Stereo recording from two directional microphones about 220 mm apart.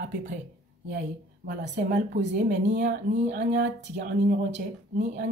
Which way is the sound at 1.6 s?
30° right (ahead or behind).